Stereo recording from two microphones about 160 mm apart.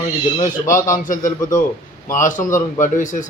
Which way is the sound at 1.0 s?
55° left (ahead or behind).